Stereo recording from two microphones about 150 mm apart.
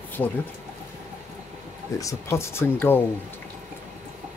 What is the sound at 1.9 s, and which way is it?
Speech, 20° left (ahead or behind).